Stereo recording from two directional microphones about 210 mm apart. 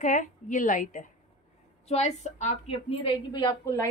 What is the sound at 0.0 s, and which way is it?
A woman's voice, 35° left (ahead or behind).